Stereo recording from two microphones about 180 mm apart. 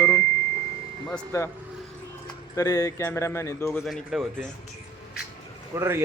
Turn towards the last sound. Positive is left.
turn(degrees=-15)  # may be behind; listen again after turning